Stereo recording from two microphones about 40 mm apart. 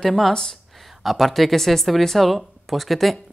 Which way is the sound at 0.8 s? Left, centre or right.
Centre.